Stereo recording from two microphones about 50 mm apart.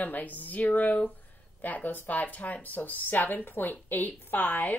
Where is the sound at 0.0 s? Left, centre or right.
Left.